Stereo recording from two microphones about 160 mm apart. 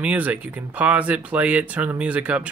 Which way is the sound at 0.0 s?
10° right (ahead or behind).